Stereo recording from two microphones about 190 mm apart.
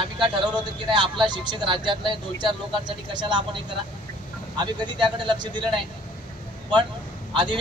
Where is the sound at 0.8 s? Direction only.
25° right (ahead or behind).